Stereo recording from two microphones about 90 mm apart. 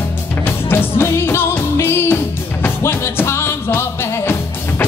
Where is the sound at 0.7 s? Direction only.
25° left (ahead or behind).